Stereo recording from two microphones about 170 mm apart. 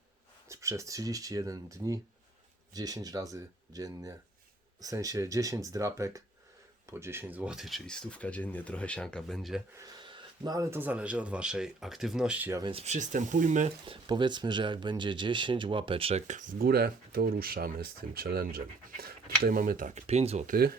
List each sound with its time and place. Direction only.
0.4 s speech: 15° right (ahead or behind); by 9.6 s centre (ahead or behind)
9.7 s speech: 25° right (ahead or behind)
12.6 s speech: 40° right (ahead or behind)
13.8 s speech: 30° right (ahead or behind)
20.5 s speech: 60° right (ahead or behind)